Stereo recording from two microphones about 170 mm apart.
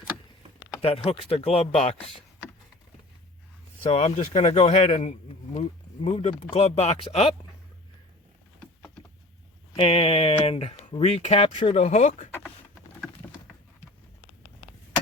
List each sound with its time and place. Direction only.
0.8 s speech: 35° left (ahead or behind)
3.8 s speech: 35° left (ahead or behind)
9.7 s speech: 35° left (ahead or behind)